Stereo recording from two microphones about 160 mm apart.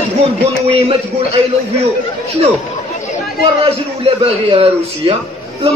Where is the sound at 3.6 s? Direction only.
30° right (ahead or behind).